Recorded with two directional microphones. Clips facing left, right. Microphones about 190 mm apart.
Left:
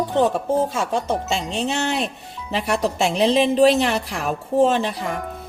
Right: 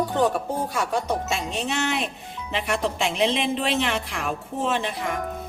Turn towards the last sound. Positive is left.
turn(degrees=35)  # may be behind; listen again after turning